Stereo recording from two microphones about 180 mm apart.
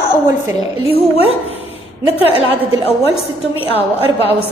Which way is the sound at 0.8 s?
30° left (ahead or behind).